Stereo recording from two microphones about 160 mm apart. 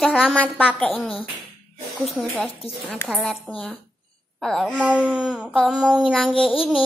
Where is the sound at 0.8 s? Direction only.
10° left (ahead or behind).